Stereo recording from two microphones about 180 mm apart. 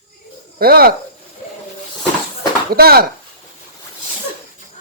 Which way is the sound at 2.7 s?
55° right (ahead or behind).